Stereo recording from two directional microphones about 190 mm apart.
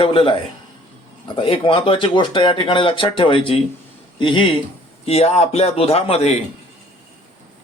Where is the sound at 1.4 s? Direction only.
25° left (ahead or behind).